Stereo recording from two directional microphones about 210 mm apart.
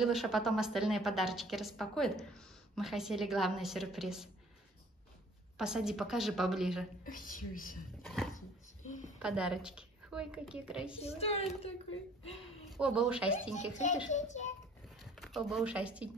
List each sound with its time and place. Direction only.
0.0 s a woman's voice: centre (ahead or behind)
5.6 s a woman's voice: 5° right (ahead or behind)
7.1 s a woman's voice: 40° left (ahead or behind)
8.0 s a sound: centre (ahead or behind)
8.8 s a sound: 35° left (ahead or behind)
9.2 s a woman's voice: 5° right (ahead or behind)
11.0 s a woman's voice: 30° left (ahead or behind)
12.7 s a woman's voice: 5° right (ahead or behind)
14.1 s a woman's voice: 35° left (ahead or behind)
15.0 s speech: centre (ahead or behind)